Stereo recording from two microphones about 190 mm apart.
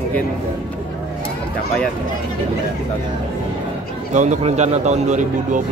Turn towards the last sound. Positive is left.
turn(degrees=-40)  # may be behind; listen again after turning